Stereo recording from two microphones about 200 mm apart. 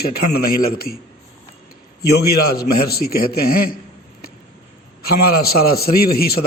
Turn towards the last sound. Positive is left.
turn(degrees=50)  # may be behind; listen again after turning